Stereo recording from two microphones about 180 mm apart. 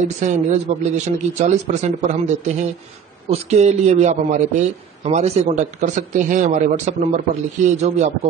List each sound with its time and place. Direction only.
0.2 s a man's voice: 40° right (ahead or behind)